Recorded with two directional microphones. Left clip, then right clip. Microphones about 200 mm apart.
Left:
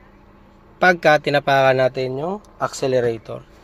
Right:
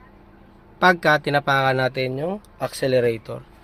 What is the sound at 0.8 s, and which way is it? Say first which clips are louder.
Speech: left 2 dB; centre (ahead or behind).